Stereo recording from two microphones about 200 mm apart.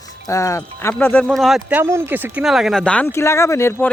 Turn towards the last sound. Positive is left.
turn(degrees=10)  # may be behind; listen again after turning